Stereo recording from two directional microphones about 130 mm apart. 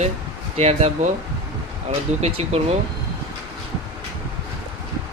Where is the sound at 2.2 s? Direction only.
55° right (ahead or behind).